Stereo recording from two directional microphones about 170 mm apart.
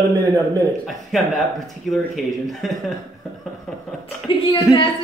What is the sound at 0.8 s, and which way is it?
Speech, centre (ahead or behind).